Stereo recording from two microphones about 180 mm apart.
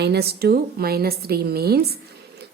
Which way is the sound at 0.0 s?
65° right (ahead or behind).